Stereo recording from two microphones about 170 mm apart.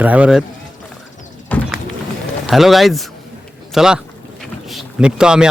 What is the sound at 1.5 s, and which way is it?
Bird, 10° left (ahead or behind).